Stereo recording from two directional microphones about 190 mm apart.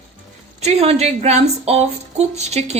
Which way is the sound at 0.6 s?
35° right (ahead or behind).